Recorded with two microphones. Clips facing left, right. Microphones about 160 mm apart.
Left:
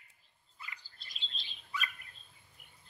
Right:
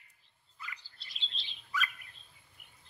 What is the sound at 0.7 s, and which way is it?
Chirp, 45° left (ahead or behind).